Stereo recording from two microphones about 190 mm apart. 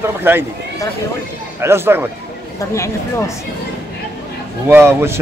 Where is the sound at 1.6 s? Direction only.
15° right (ahead or behind).